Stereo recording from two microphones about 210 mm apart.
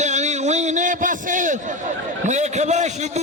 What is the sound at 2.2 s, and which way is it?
Speech, 35° right (ahead or behind).